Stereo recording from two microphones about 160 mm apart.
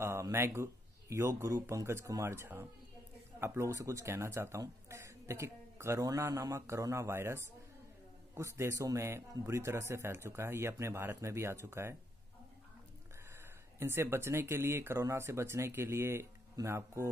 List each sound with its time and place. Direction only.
0.0 s speech: 15° right (ahead or behind)
13.3 s speech: 15° right (ahead or behind)